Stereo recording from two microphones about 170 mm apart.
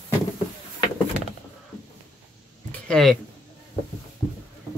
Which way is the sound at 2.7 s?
5° left (ahead or behind).